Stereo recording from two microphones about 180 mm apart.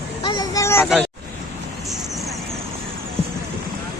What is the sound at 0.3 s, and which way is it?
Vehicle, 20° left (ahead or behind).